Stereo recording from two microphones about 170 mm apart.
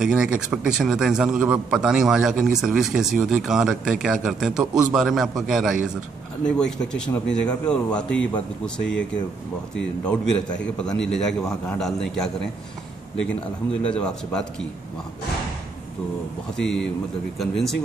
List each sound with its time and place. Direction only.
0.0 s a man's voice: 5° right (ahead or behind)
9.8 s a man's voice: 5° left (ahead or behind)
13.8 s a man's voice: 5° left (ahead or behind)
16.5 s a man's voice: 5° left (ahead or behind)